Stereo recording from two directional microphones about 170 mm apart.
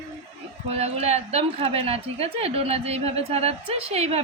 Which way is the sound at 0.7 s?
40° right (ahead or behind).